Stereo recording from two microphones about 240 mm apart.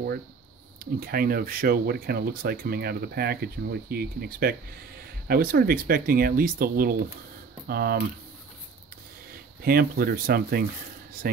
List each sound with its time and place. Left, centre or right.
0.9 s speech: right
9.6 s speech: right